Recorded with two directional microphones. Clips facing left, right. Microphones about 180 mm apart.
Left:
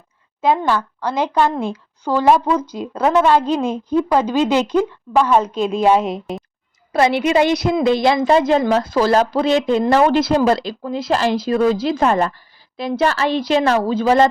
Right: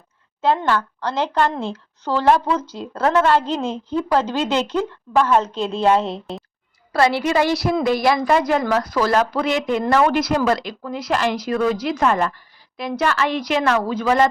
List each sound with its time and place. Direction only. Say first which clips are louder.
0.4 s a woman's voice: left 2 dB; 10° left (ahead or behind); by 14.3 s 30° left (ahead or behind)